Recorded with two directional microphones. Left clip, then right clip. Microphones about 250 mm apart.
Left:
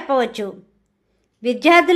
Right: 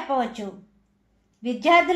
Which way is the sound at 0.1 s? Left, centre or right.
Left.